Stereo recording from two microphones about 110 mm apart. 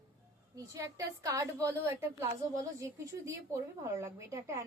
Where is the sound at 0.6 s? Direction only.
30° right (ahead or behind).